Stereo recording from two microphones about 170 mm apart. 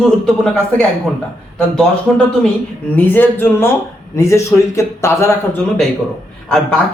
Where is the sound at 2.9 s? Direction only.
10° left (ahead or behind).